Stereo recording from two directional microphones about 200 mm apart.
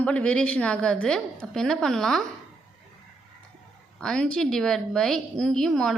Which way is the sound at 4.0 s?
5° left (ahead or behind).